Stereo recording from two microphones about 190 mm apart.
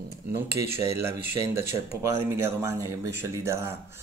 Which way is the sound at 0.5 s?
15° right (ahead or behind).